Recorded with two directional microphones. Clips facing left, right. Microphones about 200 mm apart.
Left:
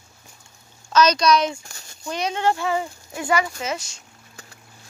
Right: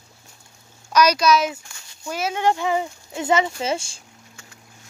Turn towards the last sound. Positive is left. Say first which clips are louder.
# right 4 dB
turn(degrees=-30)  # may be behind; listen again after turning